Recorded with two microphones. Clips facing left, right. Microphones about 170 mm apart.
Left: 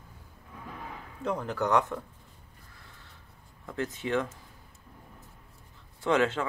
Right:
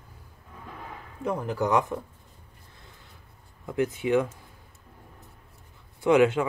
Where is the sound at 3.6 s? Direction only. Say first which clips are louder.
Right 7 dB; 15° right (ahead or behind).